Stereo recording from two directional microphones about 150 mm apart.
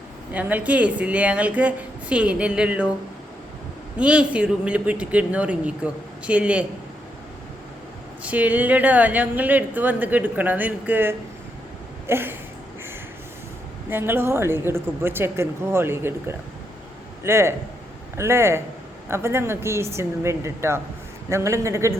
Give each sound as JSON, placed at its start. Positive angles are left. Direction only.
{"t": 0.3, "sound": "a woman's voice", "side_deg": -10}
{"t": 3.9, "sound": "a woman's voice", "side_deg": -5}
{"t": 8.2, "sound": "a woman's voice", "side_deg": -10}
{"t": 13.9, "sound": "a woman's voice", "side_deg": -15}